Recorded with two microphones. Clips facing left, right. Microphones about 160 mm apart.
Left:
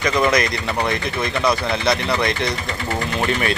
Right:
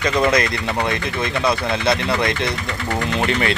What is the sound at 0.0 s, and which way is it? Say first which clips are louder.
Speech: even; 30° right (ahead or behind).